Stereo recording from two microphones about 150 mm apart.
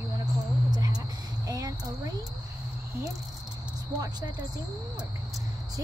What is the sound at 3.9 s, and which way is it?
Speech, 25° right (ahead or behind).